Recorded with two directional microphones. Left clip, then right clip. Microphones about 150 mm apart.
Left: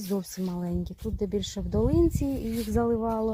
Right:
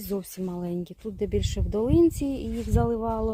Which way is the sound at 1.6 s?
10° right (ahead or behind).